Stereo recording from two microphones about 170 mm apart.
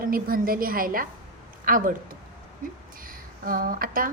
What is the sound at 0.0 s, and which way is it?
A woman's voice, 55° right (ahead or behind).